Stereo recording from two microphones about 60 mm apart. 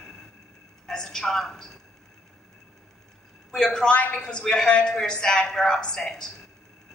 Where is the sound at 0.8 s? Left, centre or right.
Centre.